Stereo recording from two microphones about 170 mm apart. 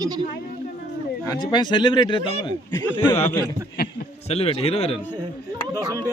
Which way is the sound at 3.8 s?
65° left (ahead or behind).